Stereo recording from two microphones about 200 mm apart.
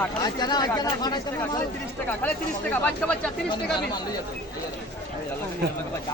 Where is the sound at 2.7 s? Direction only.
5° left (ahead or behind).